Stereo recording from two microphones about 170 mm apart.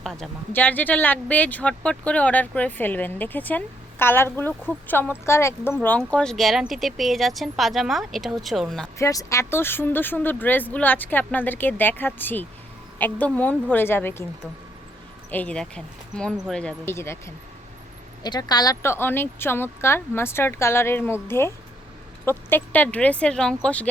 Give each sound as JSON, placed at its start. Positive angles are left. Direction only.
{"t": 0.0, "sound": "speech", "side_deg": 0}
{"t": 9.0, "sound": "speech", "side_deg": 20}
{"t": 15.3, "sound": "speech", "side_deg": 10}